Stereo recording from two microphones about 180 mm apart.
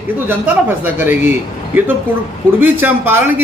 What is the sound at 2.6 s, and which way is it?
Speech, 10° right (ahead or behind).